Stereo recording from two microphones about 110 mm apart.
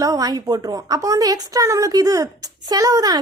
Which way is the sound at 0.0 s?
35° right (ahead or behind).